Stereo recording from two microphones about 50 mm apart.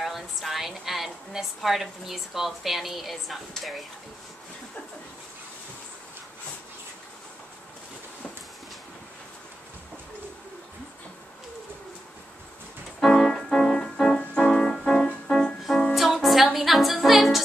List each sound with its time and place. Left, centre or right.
0.0 s a woman's voice: centre
13.0 s keyboard: centre
15.9 s music: centre